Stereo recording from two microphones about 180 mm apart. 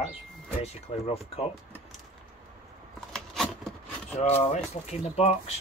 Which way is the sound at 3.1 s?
5° left (ahead or behind).